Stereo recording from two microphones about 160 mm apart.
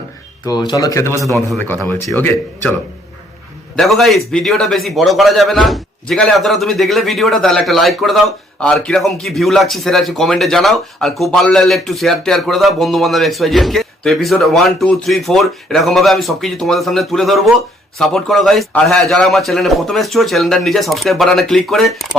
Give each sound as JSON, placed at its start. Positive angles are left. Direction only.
{"t": 0.4, "sound": "speech", "side_deg": 25}
{"t": 3.8, "sound": "a man's voice", "side_deg": 0}